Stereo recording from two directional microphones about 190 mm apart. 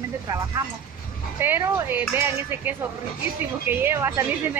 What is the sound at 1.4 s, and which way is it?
Speech, 10° right (ahead or behind).